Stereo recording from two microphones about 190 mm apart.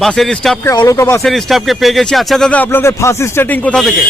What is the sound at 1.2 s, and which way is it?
Speech, centre (ahead or behind).